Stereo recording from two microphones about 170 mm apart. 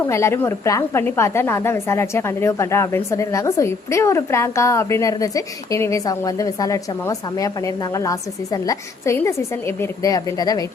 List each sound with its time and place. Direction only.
0.1 s a woman's voice: 15° left (ahead or behind)